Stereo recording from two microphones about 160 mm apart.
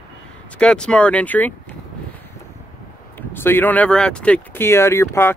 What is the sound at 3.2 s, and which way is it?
Speech, 15° left (ahead or behind).